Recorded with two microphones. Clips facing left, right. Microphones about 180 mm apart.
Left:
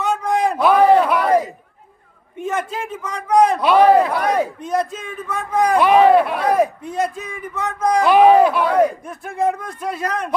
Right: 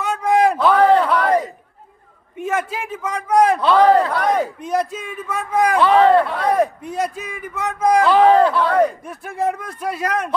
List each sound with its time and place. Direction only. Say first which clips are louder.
0.0 s a sound: right 2 dB; 5° right (ahead or behind)
0.6 s a sound: left 1 dB; 15° left (ahead or behind)
2.3 s a man's voice: right 1 dB; 5° right (ahead or behind)
3.6 s speech: left 1 dB; 15° left (ahead or behind)
4.2 s a man's voice: even; centre (ahead or behind)
5.8 s speech: left 1 dB; 15° left (ahead or behind)
6.4 s a man's voice: left 1 dB; centre (ahead or behind)
8.0 s speech: left 2 dB; 15° left (ahead or behind)
8.7 s a man's voice: left 1 dB; centre (ahead or behind)